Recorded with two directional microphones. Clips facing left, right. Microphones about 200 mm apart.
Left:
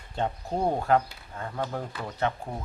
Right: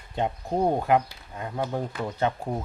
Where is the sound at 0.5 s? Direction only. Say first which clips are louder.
Right 2 dB; 15° right (ahead or behind).